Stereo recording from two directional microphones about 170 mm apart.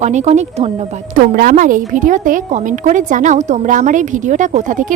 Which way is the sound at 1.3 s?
55° right (ahead or behind).